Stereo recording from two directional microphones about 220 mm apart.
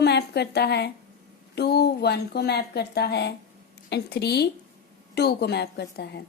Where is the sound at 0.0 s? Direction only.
50° left (ahead or behind).